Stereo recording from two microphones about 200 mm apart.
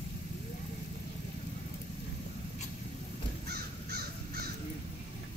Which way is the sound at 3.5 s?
50° right (ahead or behind).